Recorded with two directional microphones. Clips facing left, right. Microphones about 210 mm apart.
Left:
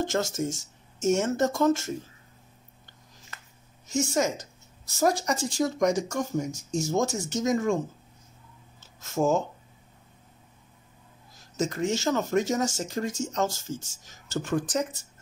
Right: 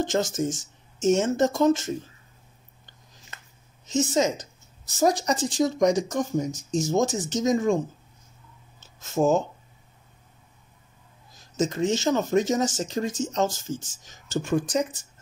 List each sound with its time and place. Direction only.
0.0 s speech: 15° right (ahead or behind)
3.3 s a sound: 20° right (ahead or behind)
3.9 s speech: 20° right (ahead or behind)
9.1 s speech: 20° right (ahead or behind)
11.5 s speech: 20° right (ahead or behind)